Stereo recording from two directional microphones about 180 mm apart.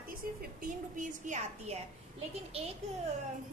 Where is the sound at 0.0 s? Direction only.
55° right (ahead or behind).